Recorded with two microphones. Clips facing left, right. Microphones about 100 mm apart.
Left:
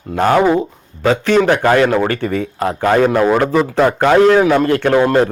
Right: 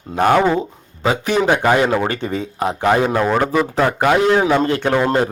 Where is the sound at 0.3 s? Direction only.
10° left (ahead or behind).